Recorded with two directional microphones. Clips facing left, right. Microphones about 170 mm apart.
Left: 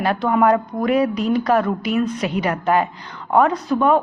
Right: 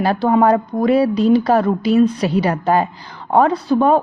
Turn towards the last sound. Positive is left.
turn(degrees=-35)  # may be behind; listen again after turning